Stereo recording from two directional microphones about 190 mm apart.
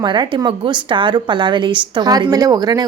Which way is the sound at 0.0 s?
25° right (ahead or behind).